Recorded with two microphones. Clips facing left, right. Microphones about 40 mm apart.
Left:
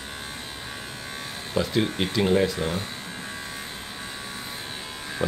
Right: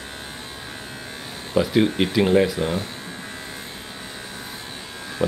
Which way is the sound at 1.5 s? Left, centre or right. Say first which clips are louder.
Right 6 dB; centre.